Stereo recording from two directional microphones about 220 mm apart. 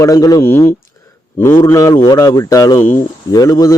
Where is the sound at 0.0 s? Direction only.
15° left (ahead or behind).